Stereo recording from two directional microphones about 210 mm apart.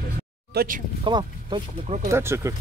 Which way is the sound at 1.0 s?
20° right (ahead or behind).